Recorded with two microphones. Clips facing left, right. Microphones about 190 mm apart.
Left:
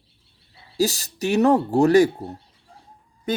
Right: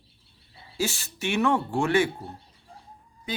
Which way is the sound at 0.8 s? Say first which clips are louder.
Left 7 dB; 40° left (ahead or behind).